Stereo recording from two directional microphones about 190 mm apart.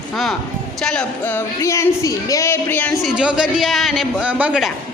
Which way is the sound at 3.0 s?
5° right (ahead or behind).